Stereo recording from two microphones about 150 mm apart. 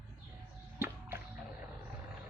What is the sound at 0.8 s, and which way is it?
Music, 15° right (ahead or behind).